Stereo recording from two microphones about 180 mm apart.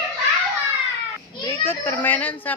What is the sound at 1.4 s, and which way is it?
A child's voice, 15° left (ahead or behind).